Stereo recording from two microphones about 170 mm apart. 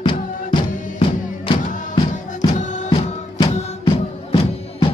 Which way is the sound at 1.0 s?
30° left (ahead or behind).